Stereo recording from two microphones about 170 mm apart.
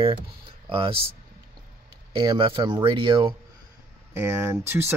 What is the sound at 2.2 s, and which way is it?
Speech, 30° right (ahead or behind).